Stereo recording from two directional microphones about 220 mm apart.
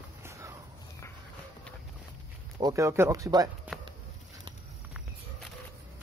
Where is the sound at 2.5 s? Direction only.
15° right (ahead or behind).